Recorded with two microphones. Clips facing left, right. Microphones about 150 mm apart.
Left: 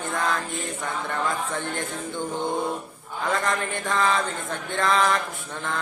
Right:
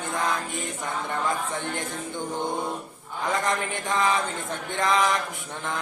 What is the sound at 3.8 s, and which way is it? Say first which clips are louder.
Mantra: left 1 dB; 15° right (ahead or behind).